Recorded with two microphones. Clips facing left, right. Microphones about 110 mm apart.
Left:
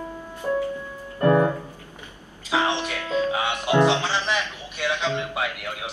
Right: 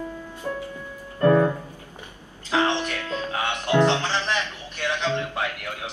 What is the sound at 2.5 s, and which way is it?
Music, 15° left (ahead or behind).